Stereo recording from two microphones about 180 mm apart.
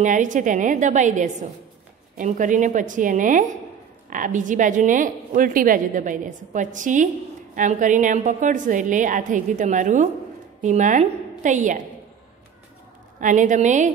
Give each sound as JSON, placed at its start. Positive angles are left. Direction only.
{"t": 0.0, "sound": "a woman's voice", "side_deg": -45}
{"t": 13.2, "sound": "a woman's voice", "side_deg": -45}